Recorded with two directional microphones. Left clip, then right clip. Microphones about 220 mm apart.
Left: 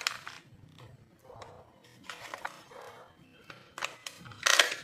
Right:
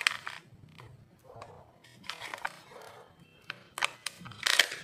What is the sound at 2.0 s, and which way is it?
Music, 15° right (ahead or behind).